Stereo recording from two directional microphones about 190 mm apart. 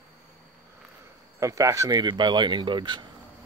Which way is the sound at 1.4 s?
15° right (ahead or behind).